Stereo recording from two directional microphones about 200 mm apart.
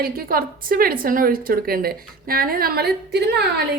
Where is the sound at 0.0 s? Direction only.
45° right (ahead or behind).